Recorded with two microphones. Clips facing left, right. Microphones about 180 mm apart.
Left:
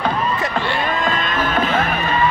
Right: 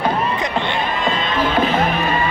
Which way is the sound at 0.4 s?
20° right (ahead or behind).